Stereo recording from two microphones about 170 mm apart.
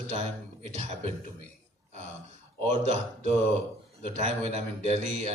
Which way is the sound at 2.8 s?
40° right (ahead or behind).